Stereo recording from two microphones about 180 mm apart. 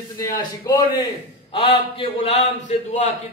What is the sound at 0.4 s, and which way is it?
A man's voice, 25° left (ahead or behind).